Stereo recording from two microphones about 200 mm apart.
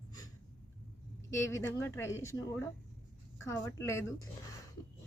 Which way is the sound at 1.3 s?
15° left (ahead or behind).